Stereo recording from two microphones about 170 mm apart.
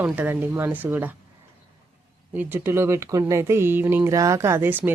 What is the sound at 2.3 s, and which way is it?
Speech, 15° right (ahead or behind).